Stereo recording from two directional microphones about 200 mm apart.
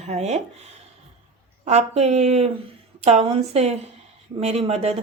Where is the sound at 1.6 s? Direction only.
35° right (ahead or behind).